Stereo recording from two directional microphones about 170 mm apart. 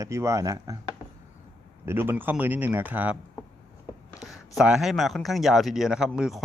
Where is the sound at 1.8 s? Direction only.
15° right (ahead or behind).